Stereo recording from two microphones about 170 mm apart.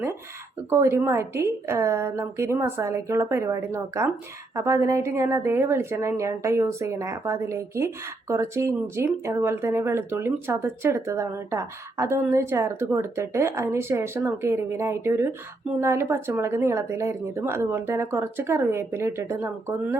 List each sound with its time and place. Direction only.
0.7 s a woman's voice: 15° right (ahead or behind)